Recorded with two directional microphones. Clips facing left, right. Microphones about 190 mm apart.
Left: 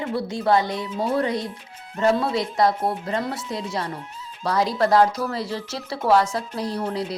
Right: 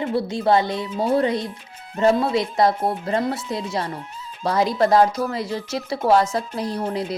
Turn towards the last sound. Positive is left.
turn(degrees=-20)  # may be behind; listen again after turning